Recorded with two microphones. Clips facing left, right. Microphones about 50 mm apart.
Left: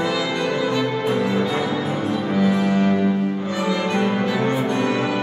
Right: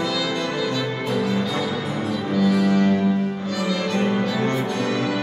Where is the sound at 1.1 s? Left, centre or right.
Left.